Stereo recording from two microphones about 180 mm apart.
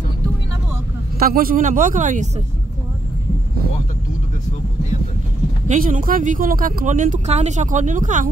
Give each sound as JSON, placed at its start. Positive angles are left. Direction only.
{"t": 1.2, "sound": "speech", "side_deg": -55}
{"t": 5.7, "sound": "speech", "side_deg": -45}